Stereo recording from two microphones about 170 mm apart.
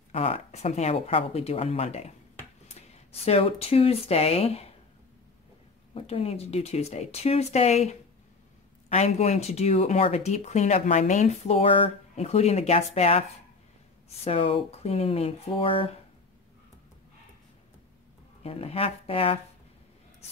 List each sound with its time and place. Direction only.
0.1 s speech: 35° left (ahead or behind)
5.9 s speech: 35° left (ahead or behind)
14.2 s speech: 35° left (ahead or behind)
18.4 s speech: 35° left (ahead or behind)